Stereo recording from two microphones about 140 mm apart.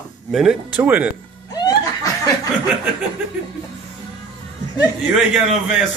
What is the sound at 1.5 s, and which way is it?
Laughter, 30° left (ahead or behind).